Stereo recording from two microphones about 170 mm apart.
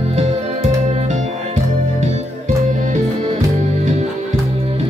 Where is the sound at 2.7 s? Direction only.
45° right (ahead or behind).